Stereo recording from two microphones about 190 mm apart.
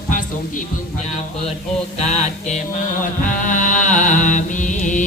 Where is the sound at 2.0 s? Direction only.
35° left (ahead or behind).